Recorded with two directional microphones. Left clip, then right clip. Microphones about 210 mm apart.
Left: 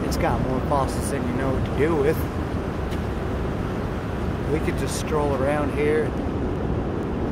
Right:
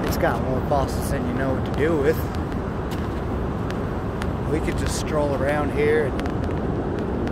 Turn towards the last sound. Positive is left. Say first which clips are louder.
# right 1 dB
turn(degrees=15)  # may be behind; listen again after turning